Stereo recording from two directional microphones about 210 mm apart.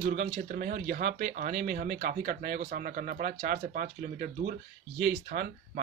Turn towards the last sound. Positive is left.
turn(degrees=-40)  # may be behind; listen again after turning